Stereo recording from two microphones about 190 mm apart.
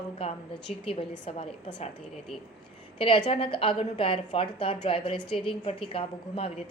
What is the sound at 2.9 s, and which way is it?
A woman's voice, 25° left (ahead or behind).